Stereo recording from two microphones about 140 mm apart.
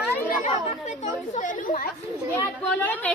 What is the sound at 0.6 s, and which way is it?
Speech, 60° left (ahead or behind).